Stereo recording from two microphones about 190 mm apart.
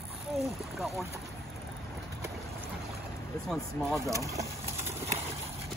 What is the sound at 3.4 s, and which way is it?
Speech, centre (ahead or behind).